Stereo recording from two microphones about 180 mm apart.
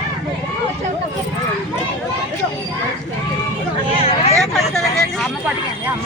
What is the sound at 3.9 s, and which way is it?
Vehicle, 35° left (ahead or behind).